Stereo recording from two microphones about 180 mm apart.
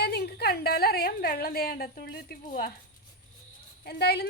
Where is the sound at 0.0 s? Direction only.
65° left (ahead or behind).